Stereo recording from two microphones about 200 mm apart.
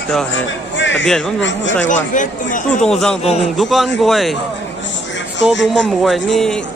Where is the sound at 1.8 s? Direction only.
40° left (ahead or behind).